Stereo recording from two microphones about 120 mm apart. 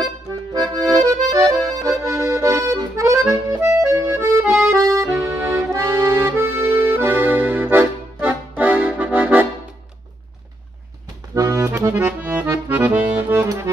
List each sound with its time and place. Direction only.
0.0 s accordion: 30° right (ahead or behind)
4.4 s accordion: 15° right (ahead or behind)
4.8 s accordion: 25° right (ahead or behind)
11.3 s accordion: 25° right (ahead or behind)
11.9 s accordion: 10° right (ahead or behind)